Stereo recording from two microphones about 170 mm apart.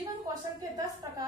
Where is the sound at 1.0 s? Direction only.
20° right (ahead or behind).